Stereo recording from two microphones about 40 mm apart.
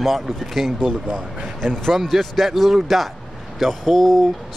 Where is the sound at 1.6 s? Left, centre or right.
Centre.